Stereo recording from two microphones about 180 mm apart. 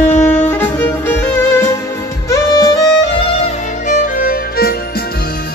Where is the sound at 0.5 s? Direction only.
10° left (ahead or behind).